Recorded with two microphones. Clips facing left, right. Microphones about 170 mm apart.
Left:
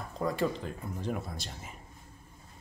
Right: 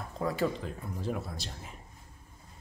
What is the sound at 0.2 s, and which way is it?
Speech, centre (ahead or behind).